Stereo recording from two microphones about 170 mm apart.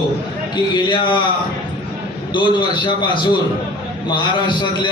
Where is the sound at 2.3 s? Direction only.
30° left (ahead or behind).